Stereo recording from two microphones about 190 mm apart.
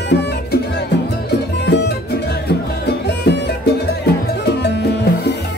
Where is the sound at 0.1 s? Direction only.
60° left (ahead or behind).